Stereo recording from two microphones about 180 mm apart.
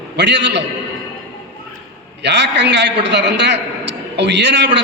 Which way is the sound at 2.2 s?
70° right (ahead or behind).